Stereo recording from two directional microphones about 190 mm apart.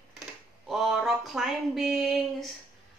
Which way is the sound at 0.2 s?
Centre (ahead or behind).